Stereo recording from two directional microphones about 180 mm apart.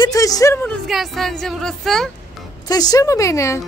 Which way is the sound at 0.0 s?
20° left (ahead or behind).